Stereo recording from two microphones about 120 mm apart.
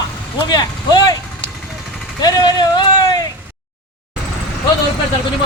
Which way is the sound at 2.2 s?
35° left (ahead or behind).